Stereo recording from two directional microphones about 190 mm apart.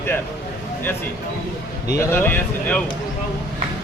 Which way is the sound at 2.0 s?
15° left (ahead or behind).